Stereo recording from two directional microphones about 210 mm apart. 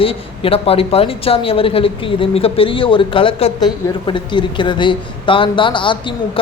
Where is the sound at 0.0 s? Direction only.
25° left (ahead or behind).